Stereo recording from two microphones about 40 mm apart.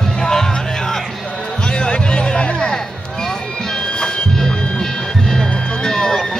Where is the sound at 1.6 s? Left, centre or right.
Left.